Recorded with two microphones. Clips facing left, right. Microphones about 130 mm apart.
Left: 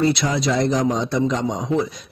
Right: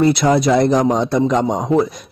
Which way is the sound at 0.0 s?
55° right (ahead or behind).